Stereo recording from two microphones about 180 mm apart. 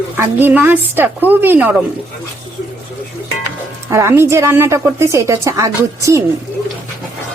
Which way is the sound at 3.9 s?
15° right (ahead or behind).